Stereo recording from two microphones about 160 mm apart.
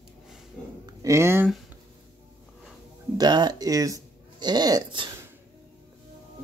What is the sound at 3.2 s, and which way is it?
Speech, 25° right (ahead or behind).